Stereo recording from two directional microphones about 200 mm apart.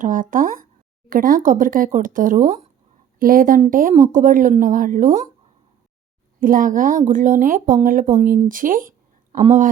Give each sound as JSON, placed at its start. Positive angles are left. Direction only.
{"t": 0.0, "sound": "speech", "side_deg": -40}
{"t": 6.4, "sound": "speech", "side_deg": -45}